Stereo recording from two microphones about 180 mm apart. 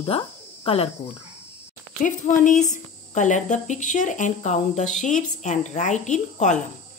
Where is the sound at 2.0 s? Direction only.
45° left (ahead or behind).